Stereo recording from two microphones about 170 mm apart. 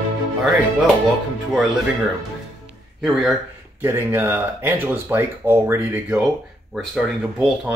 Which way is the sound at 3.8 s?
15° right (ahead or behind).